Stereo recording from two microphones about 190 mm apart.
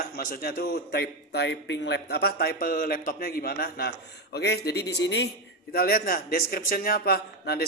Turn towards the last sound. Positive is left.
turn(degrees=55)  # may be behind; listen again after turning